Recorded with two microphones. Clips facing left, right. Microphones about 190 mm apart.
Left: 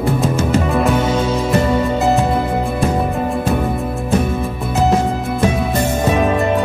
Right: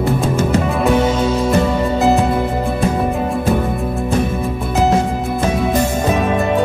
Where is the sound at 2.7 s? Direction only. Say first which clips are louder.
Right 1 dB; centre (ahead or behind).